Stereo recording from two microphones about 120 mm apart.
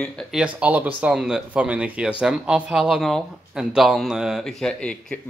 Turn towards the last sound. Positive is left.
turn(degrees=5)  # may be behind; listen again after turning